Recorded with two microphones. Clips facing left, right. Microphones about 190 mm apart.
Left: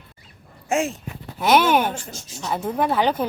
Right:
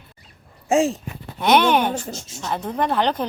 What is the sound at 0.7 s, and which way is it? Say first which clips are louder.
Speech: right 4 dB; 35° right (ahead or behind).